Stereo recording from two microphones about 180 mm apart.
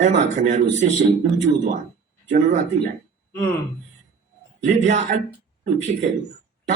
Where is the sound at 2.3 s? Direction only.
45° right (ahead or behind).